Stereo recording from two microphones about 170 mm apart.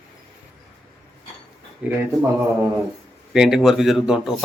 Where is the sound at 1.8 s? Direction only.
5° right (ahead or behind).